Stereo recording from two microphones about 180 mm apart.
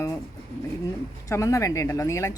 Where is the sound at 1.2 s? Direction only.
15° left (ahead or behind).